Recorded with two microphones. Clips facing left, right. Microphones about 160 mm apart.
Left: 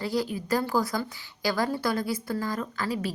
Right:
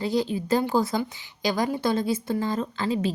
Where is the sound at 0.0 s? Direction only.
20° right (ahead or behind).